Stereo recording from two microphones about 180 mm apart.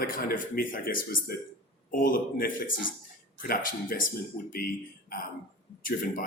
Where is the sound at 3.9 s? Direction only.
55° left (ahead or behind).